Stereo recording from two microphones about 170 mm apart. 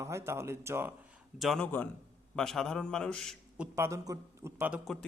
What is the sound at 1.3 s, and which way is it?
A man's voice, centre (ahead or behind).